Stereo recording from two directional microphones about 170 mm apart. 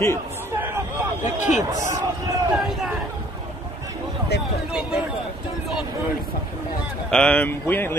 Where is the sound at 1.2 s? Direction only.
45° left (ahead or behind).